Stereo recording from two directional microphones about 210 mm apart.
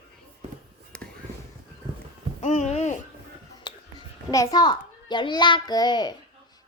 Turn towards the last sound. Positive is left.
turn(degrees=20)  # may be behind; listen again after turning